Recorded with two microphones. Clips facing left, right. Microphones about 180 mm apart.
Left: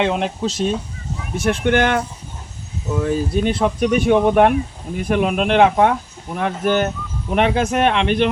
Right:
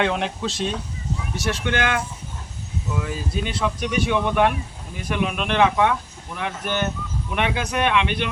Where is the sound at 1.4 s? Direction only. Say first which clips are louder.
Left 8 dB; 55° left (ahead or behind).